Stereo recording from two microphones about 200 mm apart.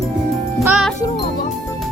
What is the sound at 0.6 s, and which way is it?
Music, 5° right (ahead or behind).